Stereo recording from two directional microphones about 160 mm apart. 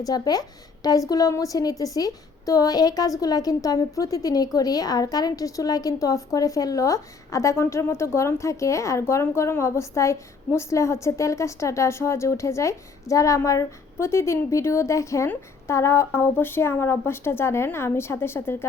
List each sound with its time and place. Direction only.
0.0 s a woman's voice: 25° left (ahead or behind)